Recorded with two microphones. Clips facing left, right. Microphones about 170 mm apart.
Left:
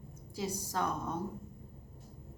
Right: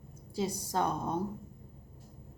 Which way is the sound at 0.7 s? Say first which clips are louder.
Right 3 dB; 30° right (ahead or behind).